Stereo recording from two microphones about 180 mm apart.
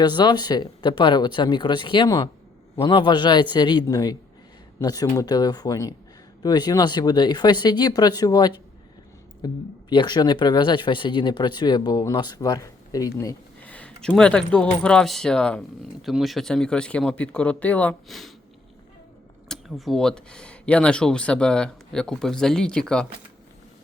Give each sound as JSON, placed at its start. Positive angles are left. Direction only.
{"t": 0.0, "sound": "speech", "side_deg": 25}
{"t": 13.7, "sound": "speech", "side_deg": 5}
{"t": 19.5, "sound": "speech", "side_deg": 0}